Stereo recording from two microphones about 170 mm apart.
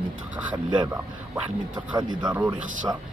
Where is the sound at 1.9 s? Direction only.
25° right (ahead or behind).